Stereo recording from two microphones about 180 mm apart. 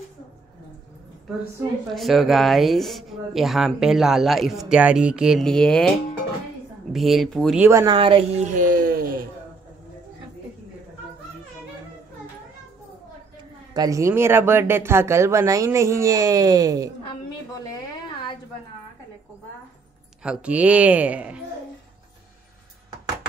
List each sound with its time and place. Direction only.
2.0 s speech: centre (ahead or behind)
7.8 s speech: 30° right (ahead or behind)
8.5 s a sound: 50° right (ahead or behind)
13.7 s speech: 20° right (ahead or behind)
20.2 s speech: 5° right (ahead or behind)